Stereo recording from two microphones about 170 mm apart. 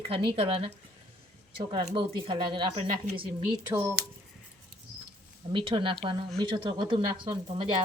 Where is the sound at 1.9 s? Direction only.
30° right (ahead or behind).